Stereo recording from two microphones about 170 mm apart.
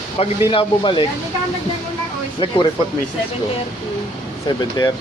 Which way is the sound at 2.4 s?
30° left (ahead or behind).